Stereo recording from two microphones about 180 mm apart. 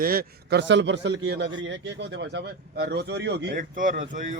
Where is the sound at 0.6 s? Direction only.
90° right; by 3.6 s 70° right (ahead or behind).